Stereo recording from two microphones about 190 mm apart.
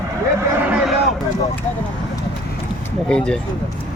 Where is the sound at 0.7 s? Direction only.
5° right (ahead or behind).